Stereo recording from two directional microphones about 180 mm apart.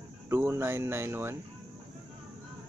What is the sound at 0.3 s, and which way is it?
Speech, 15° right (ahead or behind).